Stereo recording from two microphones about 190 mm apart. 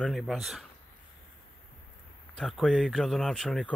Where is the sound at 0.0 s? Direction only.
Centre (ahead or behind).